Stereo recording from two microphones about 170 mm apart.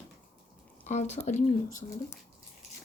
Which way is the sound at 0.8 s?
40° left (ahead or behind).